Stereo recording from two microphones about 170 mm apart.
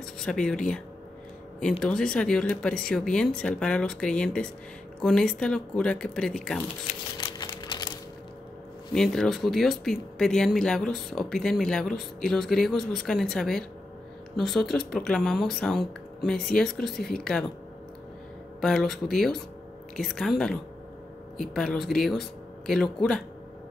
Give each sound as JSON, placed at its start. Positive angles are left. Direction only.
{"t": 0.0, "sound": "speech", "side_deg": 5}
{"t": 7.2, "sound": "a sound", "side_deg": 25}
{"t": 8.9, "sound": "speech", "side_deg": 5}
{"t": 18.6, "sound": "speech", "side_deg": 0}